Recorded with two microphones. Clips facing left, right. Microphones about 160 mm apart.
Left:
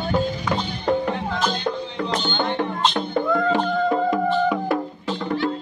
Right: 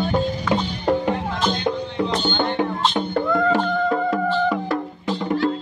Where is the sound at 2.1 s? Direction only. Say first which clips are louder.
Even; 10° right (ahead or behind).